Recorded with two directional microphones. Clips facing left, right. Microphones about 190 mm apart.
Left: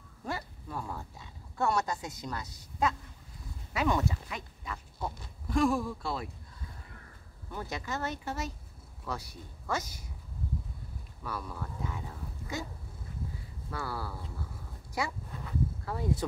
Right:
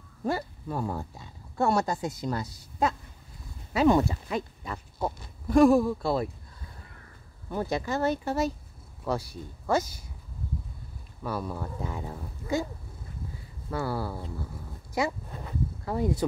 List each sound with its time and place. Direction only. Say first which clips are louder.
0.2 s speech: right 8 dB; 35° right (ahead or behind)
7.5 s speech: right 8 dB; 30° right (ahead or behind)
11.2 s speech: right 7 dB; 30° right (ahead or behind)
13.7 s speech: right 7 dB; 25° right (ahead or behind)